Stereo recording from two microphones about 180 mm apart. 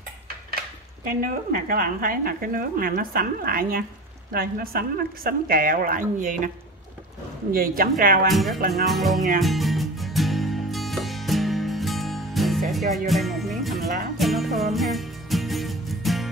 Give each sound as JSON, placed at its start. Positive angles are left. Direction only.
{"t": 1.0, "sound": "a woman's voice", "side_deg": -55}
{"t": 7.5, "sound": "a woman's voice", "side_deg": -55}
{"t": 8.3, "sound": "music", "side_deg": 0}
{"t": 8.5, "sound": "music", "side_deg": -55}
{"t": 8.8, "sound": "music", "side_deg": 0}
{"t": 13.7, "sound": "music", "side_deg": -55}
{"t": 14.1, "sound": "music", "side_deg": 0}